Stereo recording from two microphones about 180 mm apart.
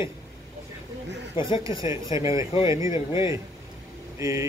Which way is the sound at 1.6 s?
20° right (ahead or behind).